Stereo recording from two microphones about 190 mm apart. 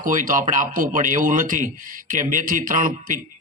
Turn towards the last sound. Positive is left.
turn(degrees=-45)  # may be behind; listen again after turning